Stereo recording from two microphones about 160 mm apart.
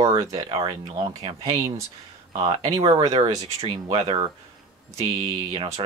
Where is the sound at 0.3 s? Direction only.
35° right (ahead or behind).